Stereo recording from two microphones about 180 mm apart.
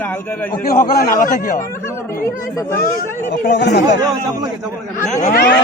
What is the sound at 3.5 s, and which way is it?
Speech, 75° left (ahead or behind).